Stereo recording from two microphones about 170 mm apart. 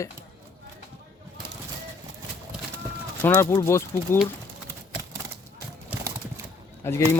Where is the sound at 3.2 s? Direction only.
15° left (ahead or behind).